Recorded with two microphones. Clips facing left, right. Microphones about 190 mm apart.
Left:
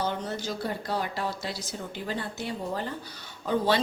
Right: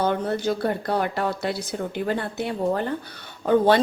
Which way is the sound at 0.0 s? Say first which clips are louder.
Right 8 dB; 60° right (ahead or behind).